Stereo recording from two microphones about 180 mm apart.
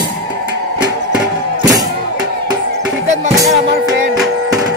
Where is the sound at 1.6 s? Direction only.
20° right (ahead or behind).